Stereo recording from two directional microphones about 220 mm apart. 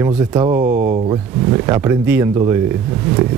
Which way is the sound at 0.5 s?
35° right (ahead or behind).